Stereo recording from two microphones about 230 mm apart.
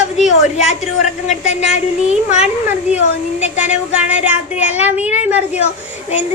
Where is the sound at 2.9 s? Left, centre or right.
Left.